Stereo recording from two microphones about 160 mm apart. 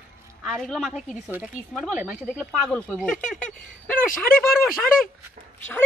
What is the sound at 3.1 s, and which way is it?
Speech, 55° left (ahead or behind).